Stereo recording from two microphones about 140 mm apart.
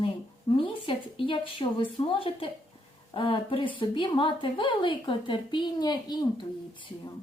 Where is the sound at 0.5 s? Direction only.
40° left (ahead or behind).